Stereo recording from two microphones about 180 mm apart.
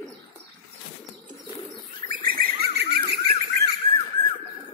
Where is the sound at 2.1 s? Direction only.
50° right (ahead or behind).